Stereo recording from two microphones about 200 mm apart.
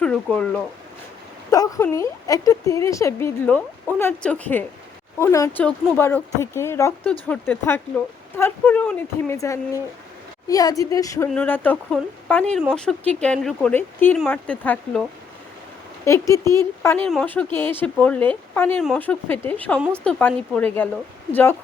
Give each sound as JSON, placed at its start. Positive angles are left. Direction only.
{"t": 0.0, "sound": "speech", "side_deg": 5}
{"t": 1.5, "sound": "speech", "side_deg": 15}
{"t": 16.0, "sound": "speech", "side_deg": 15}